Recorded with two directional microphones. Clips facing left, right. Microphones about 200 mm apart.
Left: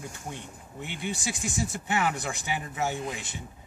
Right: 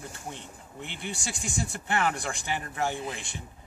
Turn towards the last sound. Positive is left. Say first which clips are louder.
# even
turn(degrees=5)  # may be behind; listen again after turning